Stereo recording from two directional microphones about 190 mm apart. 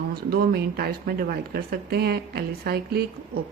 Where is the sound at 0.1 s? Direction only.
55° right (ahead or behind).